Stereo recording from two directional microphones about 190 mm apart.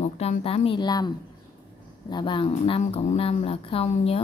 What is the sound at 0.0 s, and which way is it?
Speech, 35° left (ahead or behind).